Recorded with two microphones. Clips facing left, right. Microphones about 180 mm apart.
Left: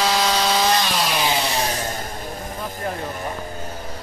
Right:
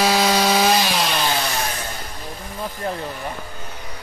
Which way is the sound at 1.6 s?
35° left (ahead or behind).